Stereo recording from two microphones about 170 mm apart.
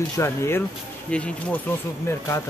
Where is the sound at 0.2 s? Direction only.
15° left (ahead or behind).